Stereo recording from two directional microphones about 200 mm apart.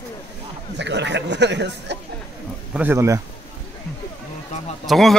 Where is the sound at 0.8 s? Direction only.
60° right (ahead or behind).